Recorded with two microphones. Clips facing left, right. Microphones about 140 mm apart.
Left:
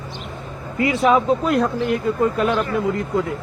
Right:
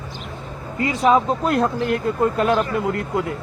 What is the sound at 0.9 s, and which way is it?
Speech, 35° right (ahead or behind).